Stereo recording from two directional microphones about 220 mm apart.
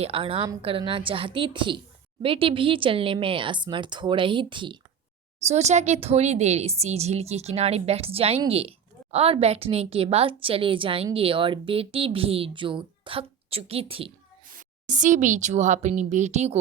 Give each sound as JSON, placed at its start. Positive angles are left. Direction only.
{"t": 0.0, "sound": "a woman's voice", "side_deg": -25}